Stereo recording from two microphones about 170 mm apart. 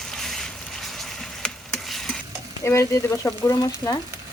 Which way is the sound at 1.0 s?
Centre (ahead or behind).